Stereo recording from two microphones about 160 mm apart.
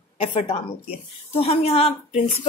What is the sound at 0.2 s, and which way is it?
Speech, 35° left (ahead or behind).